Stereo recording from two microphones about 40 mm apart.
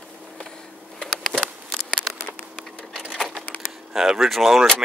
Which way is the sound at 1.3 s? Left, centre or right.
Centre.